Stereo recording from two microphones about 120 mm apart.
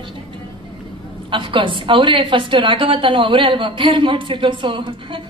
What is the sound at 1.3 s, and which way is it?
A woman's voice, 45° right (ahead or behind).